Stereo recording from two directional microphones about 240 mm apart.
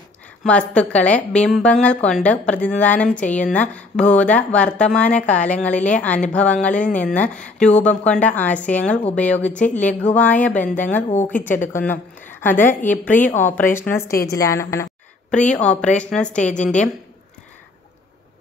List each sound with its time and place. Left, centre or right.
0.4 s a woman's voice: centre
16.5 s a woman's voice: left